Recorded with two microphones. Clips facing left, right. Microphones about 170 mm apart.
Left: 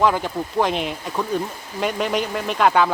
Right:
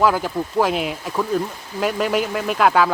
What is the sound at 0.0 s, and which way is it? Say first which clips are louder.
Speech: right 1 dB; 5° right (ahead or behind).